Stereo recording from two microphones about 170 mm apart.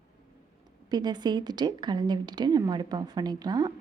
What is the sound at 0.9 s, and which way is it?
Speech, 25° right (ahead or behind).